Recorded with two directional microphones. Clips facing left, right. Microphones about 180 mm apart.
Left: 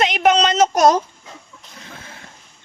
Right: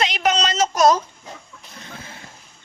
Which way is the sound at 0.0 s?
50° left (ahead or behind).